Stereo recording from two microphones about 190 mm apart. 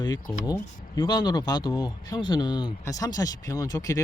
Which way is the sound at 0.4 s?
20° left (ahead or behind).